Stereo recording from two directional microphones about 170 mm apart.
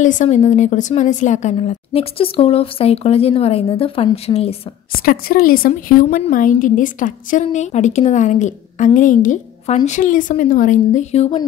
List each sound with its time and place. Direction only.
0.0 s a woman's voice: 45° left (ahead or behind)
5.0 s a woman's voice: 60° left (ahead or behind); by 11.3 s 40° left (ahead or behind)